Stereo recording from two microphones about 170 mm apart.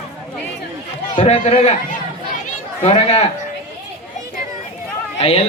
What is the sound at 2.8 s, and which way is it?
Speech, 40° left (ahead or behind).